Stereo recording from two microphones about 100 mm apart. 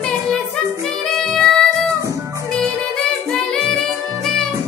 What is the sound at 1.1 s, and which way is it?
Music, 5° left (ahead or behind).